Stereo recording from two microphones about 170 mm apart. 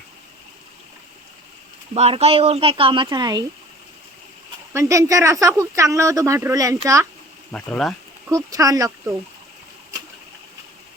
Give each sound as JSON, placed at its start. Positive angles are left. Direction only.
{"t": 1.9, "sound": "speech", "side_deg": -35}
{"t": 4.7, "sound": "speech", "side_deg": -15}
{"t": 7.5, "sound": "speech", "side_deg": 5}
{"t": 8.3, "sound": "speech", "side_deg": -20}